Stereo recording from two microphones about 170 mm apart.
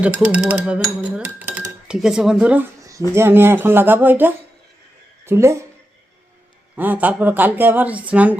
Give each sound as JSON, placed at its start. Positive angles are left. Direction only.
{"t": 0.0, "sound": "a woman's voice", "side_deg": -5}
{"t": 6.7, "sound": "speech", "side_deg": -10}